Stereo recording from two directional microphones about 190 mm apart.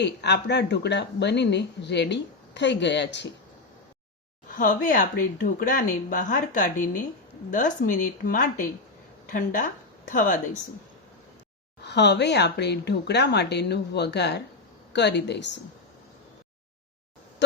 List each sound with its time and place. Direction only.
0.0 s speech: 60° left (ahead or behind)
4.5 s a woman's voice: 45° left (ahead or behind)
10.1 s a woman's voice: 45° left (ahead or behind)
11.8 s speech: 65° left (ahead or behind)